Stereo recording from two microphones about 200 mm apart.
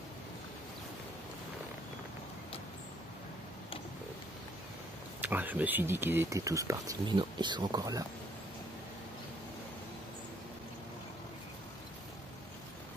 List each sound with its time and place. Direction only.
5.2 s speech: 10° right (ahead or behind)